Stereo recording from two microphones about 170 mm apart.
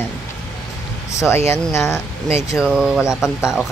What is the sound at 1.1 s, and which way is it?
Speech, 15° left (ahead or behind).